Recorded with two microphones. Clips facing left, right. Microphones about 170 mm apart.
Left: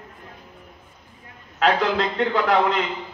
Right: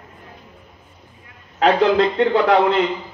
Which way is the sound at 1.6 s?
35° right (ahead or behind).